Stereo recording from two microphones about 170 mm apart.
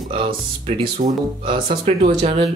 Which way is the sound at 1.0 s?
55° right (ahead or behind).